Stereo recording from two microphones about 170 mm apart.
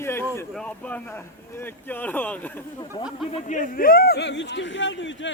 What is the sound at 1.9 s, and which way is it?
Speech, 10° left (ahead or behind).